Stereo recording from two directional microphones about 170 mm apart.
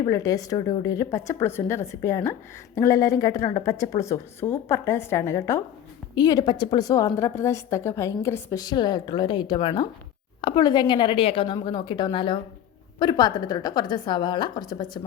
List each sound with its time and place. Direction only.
0.0 s a woman's voice: 20° left (ahead or behind)